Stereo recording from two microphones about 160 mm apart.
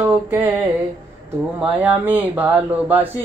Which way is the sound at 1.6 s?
10° right (ahead or behind).